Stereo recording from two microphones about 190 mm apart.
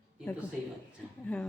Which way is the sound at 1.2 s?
5° left (ahead or behind).